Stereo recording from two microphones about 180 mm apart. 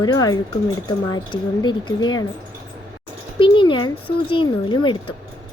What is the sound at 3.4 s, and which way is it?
Speech, 25° left (ahead or behind).